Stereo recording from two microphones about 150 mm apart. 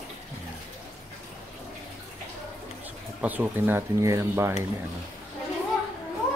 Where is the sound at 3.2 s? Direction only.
10° right (ahead or behind).